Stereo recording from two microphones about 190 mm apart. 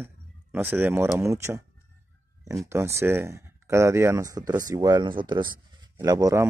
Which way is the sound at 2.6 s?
15° right (ahead or behind).